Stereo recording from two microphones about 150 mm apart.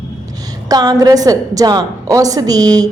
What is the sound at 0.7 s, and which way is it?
A woman's voice, 25° right (ahead or behind).